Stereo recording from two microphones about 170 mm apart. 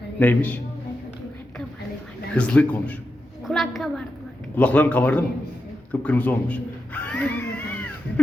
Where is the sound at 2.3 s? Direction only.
5° left (ahead or behind).